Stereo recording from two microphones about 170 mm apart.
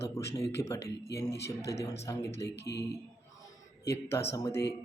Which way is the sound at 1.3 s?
80° left.